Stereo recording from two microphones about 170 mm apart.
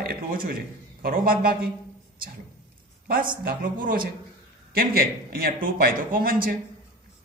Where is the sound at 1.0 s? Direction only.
60° right (ahead or behind).